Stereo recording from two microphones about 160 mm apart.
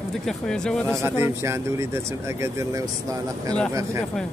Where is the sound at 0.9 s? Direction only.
15° right (ahead or behind).